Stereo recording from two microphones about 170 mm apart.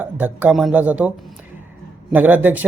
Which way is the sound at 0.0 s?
10° right (ahead or behind).